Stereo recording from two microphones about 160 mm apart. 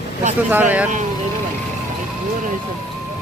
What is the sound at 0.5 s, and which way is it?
Speech, 10° right (ahead or behind).